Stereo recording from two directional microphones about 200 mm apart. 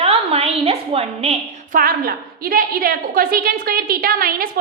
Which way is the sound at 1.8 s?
45° right (ahead or behind).